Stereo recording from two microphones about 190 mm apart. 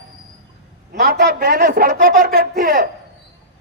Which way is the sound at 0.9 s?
55° right (ahead or behind).